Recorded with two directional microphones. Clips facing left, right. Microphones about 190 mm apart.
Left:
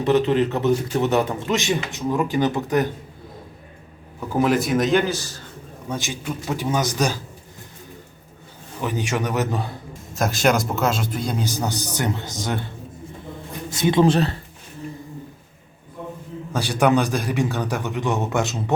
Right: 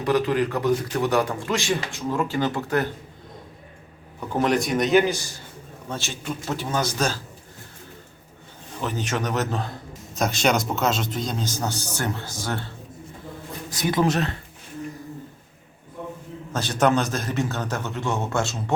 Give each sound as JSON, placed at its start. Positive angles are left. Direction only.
{"t": 0.0, "sound": "a man's voice", "side_deg": 25}
{"t": 4.3, "sound": "speech", "side_deg": 5}
{"t": 5.0, "sound": "a man's voice", "side_deg": -15}
{"t": 5.9, "sound": "a man's voice", "side_deg": 15}
{"t": 8.8, "sound": "a man's voice", "side_deg": 10}
{"t": 10.2, "sound": "a man's voice", "side_deg": 0}
{"t": 16.5, "sound": "a man's voice", "side_deg": 10}